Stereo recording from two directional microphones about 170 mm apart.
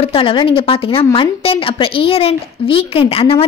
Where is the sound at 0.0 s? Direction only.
30° left (ahead or behind).